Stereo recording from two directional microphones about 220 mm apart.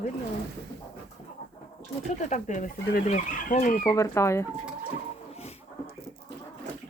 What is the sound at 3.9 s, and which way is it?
Speech, 15° left (ahead or behind).